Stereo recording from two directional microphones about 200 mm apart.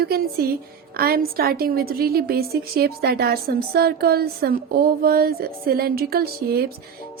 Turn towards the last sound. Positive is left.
turn(degrees=-50)  # may be behind; listen again after turning